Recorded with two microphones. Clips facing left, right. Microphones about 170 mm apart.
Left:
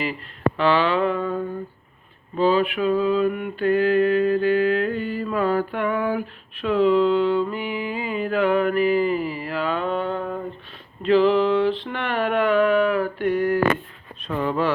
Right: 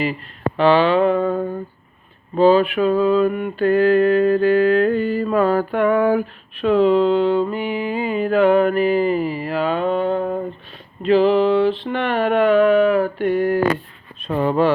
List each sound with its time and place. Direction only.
0.0 s speech: 25° right (ahead or behind)
0.6 s a sound: 25° right (ahead or behind)
1.2 s humming: 50° right (ahead or behind)
2.4 s mantra: 35° right (ahead or behind)
5.9 s speech: 75° right (ahead or behind)
6.6 s a sound: 30° right (ahead or behind)
10.1 s mantra: 35° right (ahead or behind)
11.0 s a sound: 20° right (ahead or behind)
14.3 s mantra: 35° right (ahead or behind)